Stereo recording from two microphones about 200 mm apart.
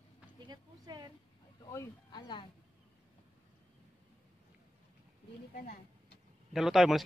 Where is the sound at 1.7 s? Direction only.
15° left (ahead or behind).